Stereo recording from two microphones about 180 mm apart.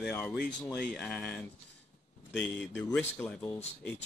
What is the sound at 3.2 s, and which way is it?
Speech, 10° left (ahead or behind).